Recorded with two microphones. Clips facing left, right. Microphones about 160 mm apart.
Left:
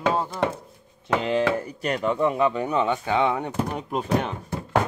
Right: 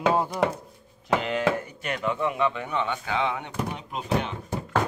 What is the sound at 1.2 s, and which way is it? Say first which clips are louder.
Speech: left 3 dB; 30° left (ahead or behind).